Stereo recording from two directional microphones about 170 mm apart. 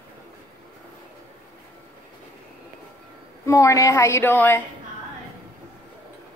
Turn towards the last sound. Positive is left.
turn(degrees=10)  # may be behind; listen again after turning